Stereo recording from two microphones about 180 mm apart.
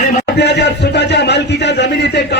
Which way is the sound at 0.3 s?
70° left (ahead or behind).